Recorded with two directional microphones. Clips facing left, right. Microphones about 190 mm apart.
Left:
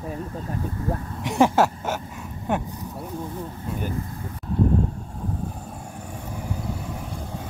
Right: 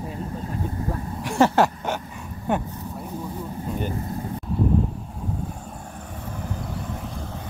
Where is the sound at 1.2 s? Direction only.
20° left (ahead or behind).